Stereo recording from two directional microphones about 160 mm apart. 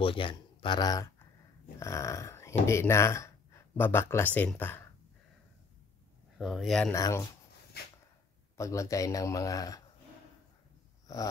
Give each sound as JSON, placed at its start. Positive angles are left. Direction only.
{"t": 0.0, "sound": "speech", "side_deg": 30}
{"t": 6.3, "sound": "speech", "side_deg": 0}
{"t": 6.9, "sound": "speech", "side_deg": 20}
{"t": 8.5, "sound": "speech", "side_deg": 20}
{"t": 11.1, "sound": "a sound", "side_deg": 20}